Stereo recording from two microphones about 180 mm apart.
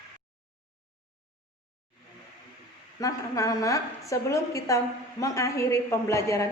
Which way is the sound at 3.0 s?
20° left (ahead or behind).